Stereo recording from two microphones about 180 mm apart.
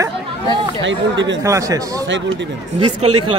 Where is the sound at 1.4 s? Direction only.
15° right (ahead or behind).